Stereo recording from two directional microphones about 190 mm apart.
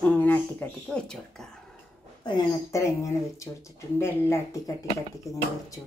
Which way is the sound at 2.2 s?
20° left (ahead or behind).